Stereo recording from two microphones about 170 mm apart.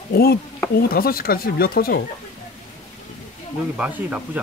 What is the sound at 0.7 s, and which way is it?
Speech, 60° left (ahead or behind).